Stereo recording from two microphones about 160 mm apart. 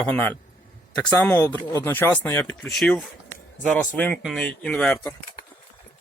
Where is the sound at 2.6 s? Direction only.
Centre (ahead or behind).